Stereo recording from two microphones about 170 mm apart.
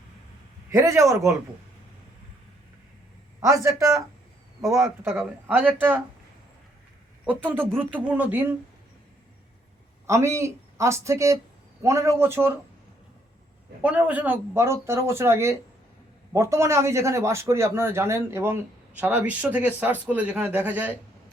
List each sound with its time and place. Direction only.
0.7 s a man's voice: 15° right (ahead or behind)
3.4 s a man's voice: 15° right (ahead or behind)
7.3 s a man's voice: 10° right (ahead or behind)
10.1 s a man's voice: 15° right (ahead or behind)
13.8 s a man's voice: 10° right (ahead or behind)